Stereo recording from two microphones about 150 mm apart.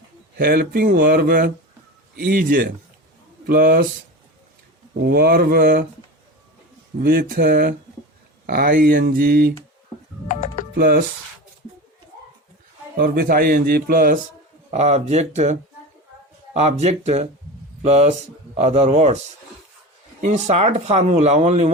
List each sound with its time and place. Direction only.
0.3 s a man's voice: 90° right
5.0 s speech: 90° right
7.0 s speech: 80° right
10.2 s music: 60° left (ahead or behind)
10.8 s speech: 80° right
13.0 s speech: 80° right
14.7 s speech: 50° right (ahead or behind)
16.6 s speech: 50° right (ahead or behind)
20.2 s speech: 50° right (ahead or behind)